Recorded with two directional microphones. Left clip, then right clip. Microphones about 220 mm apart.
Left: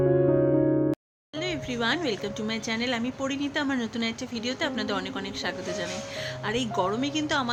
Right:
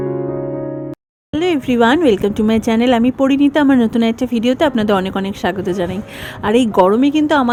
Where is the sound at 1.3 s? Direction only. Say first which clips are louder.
Right 15 dB; 40° right (ahead or behind).